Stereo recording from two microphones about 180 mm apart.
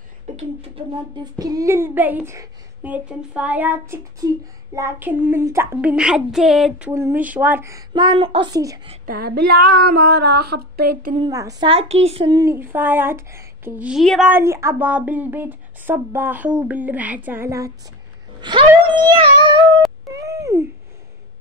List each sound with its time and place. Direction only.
0.4 s a child's voice: 30° right (ahead or behind); by 6.9 s centre (ahead or behind)
6.9 s a woman's voice: 15° right (ahead or behind)
9.0 s female singing: 55° right (ahead or behind)
11.1 s a woman's voice: 20° right (ahead or behind)
11.7 s speech: 35° right (ahead or behind)
12.3 s a child's voice: 15° right (ahead or behind); by 14.3 s centre (ahead or behind)
14.3 s a child's voice: 15° right (ahead or behind)
20.1 s wail: 15° right (ahead or behind)